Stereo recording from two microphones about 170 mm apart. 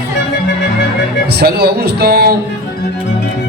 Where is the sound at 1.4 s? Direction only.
70° right (ahead or behind).